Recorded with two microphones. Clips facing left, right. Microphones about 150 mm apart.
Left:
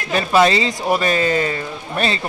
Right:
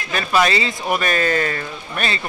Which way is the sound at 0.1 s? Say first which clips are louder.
Left 4 dB; 25° left (ahead or behind).